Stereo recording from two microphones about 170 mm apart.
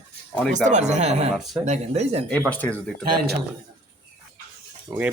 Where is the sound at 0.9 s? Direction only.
40° right (ahead or behind).